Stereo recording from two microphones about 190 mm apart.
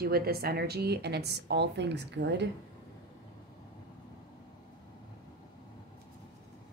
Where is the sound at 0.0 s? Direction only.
55° right (ahead or behind).